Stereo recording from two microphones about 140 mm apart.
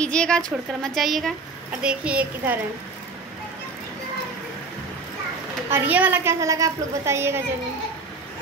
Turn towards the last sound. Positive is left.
turn(degrees=-20)  # may be behind; listen again after turning